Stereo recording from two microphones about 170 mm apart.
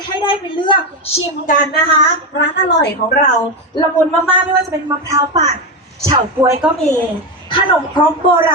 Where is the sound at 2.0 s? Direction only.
90° left.